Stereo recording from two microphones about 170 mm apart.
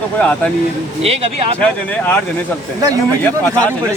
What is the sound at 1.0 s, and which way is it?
Speech, 35° right (ahead or behind).